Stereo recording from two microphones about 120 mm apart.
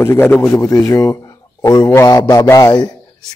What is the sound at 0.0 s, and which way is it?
A man's voice, 15° left (ahead or behind).